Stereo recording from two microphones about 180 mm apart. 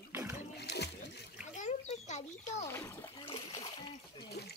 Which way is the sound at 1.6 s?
40° left (ahead or behind).